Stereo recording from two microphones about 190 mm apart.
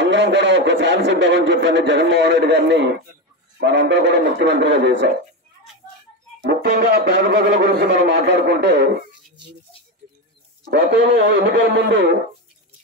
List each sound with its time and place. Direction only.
0.0 s a man's voice: 70° right (ahead or behind)
6.4 s speech: 55° right (ahead or behind)
10.6 s a man's voice: 65° right (ahead or behind)